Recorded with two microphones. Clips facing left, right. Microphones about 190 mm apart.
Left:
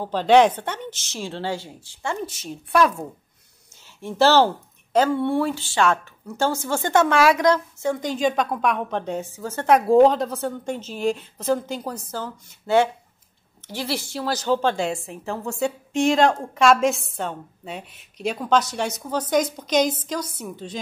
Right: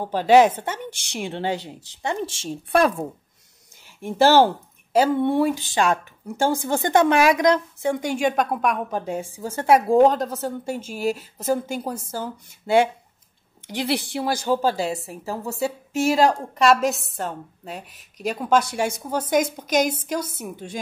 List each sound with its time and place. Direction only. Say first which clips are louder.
0.0 s a woman's voice: right 1 dB; 10° right (ahead or behind); by 2.5 s 25° right (ahead or behind)
4.0 s a woman's voice: right 1 dB; 10° right (ahead or behind)
20.2 s speech: right 1 dB; 25° right (ahead or behind)